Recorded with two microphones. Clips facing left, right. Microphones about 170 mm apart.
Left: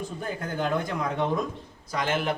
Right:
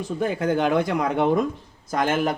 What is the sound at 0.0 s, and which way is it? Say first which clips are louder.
Speech: right 9 dB; 90° right.